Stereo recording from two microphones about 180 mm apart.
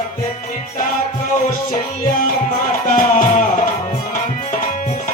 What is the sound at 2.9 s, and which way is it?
Music, 45° left (ahead or behind).